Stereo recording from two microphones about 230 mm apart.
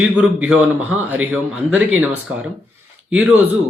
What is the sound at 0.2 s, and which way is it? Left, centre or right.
A man's voice, centre.